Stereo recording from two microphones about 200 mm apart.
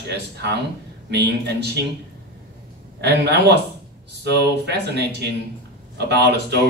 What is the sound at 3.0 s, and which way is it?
Speech, 55° right (ahead or behind).